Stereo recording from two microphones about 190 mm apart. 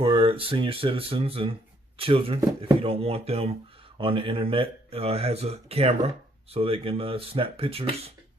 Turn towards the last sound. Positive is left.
turn(degrees=-30)  # may be behind; listen again after turning